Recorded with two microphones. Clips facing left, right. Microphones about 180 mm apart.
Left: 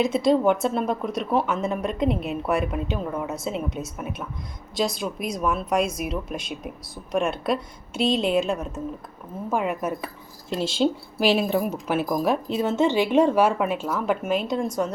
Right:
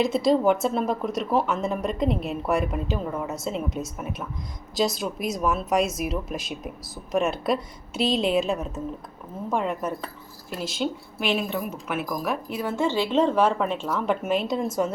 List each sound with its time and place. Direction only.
0.0 s a woman's voice: centre (ahead or behind)
10.5 s a woman's voice: 30° left (ahead or behind); by 14.7 s centre (ahead or behind)